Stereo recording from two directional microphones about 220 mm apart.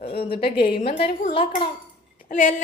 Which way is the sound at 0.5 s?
45° left (ahead or behind).